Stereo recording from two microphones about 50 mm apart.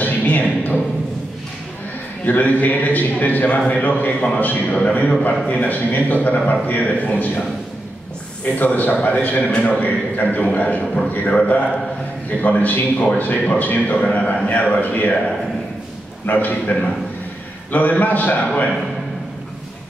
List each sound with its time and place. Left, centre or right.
0.0 s a sound: left
2.2 s a man's voice: left
8.5 s a man's voice: left
16.3 s a man's voice: left